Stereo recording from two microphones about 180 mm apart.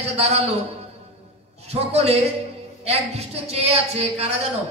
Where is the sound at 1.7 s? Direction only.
35° right (ahead or behind).